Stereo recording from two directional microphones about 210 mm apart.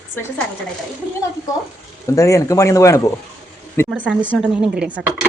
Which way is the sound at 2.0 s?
15° left (ahead or behind).